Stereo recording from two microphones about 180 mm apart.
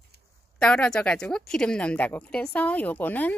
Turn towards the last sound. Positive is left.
turn(degrees=10)  # may be behind; listen again after turning